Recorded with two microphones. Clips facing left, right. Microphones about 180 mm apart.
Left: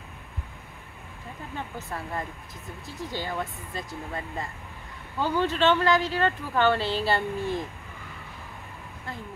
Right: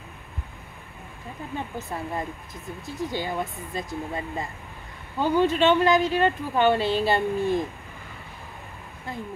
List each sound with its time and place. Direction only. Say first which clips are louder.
1.6 s speech: right 2 dB; 15° right (ahead or behind)